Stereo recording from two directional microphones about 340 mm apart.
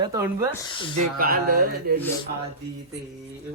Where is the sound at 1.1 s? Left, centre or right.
Right.